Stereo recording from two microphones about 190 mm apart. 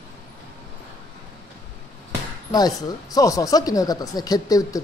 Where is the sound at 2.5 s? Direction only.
20° left (ahead or behind).